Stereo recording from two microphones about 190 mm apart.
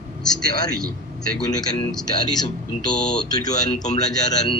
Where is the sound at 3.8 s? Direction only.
40° left (ahead or behind).